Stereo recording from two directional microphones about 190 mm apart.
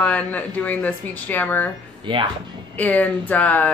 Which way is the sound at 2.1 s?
25° right (ahead or behind).